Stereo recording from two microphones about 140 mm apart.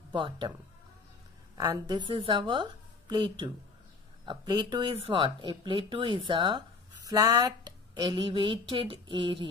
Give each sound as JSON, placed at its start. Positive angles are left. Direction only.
{"t": 0.1, "sound": "speech", "side_deg": -35}
{"t": 1.6, "sound": "speech", "side_deg": -25}